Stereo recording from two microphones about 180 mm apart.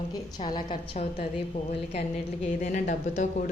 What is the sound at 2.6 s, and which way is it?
Speech, 45° left (ahead or behind).